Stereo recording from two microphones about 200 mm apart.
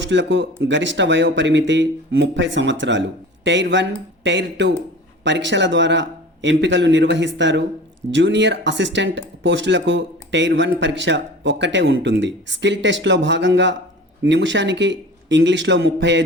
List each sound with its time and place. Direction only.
0.0 s speech: 65° right (ahead or behind)